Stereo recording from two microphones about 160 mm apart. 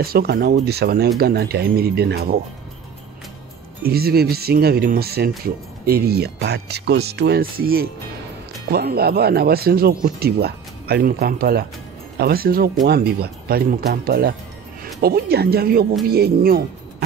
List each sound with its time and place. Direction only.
0.0 s speech: 75° right (ahead or behind)
3.8 s speech: 75° right (ahead or behind)
8.6 s speech: 80° right